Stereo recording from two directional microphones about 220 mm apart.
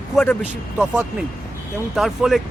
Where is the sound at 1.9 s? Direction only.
Centre (ahead or behind).